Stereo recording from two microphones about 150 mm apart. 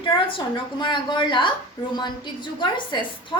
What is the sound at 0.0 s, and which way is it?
A woman's voice, 35° left (ahead or behind).